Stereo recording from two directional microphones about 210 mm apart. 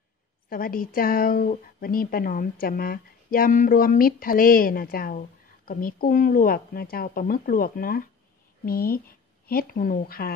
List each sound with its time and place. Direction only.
0.5 s speech: 40° left (ahead or behind)